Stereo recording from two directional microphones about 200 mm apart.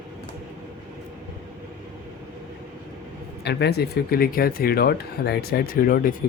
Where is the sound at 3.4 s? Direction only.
55° left (ahead or behind).